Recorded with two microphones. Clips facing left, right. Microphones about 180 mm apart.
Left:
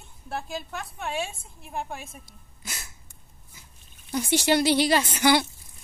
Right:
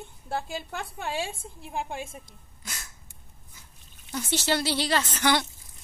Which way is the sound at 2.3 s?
10° left (ahead or behind).